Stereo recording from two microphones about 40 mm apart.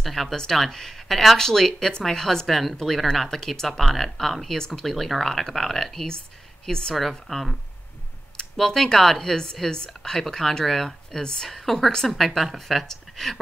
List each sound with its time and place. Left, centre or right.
0.0 s speech: centre
2.4 s speech: centre
4.8 s speech: centre
6.7 s speech: centre
7.0 s speech: centre
8.5 s speech: centre
11.4 s speech: centre